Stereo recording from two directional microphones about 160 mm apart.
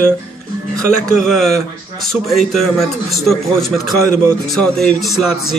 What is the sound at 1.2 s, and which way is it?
Speech, 5° left (ahead or behind).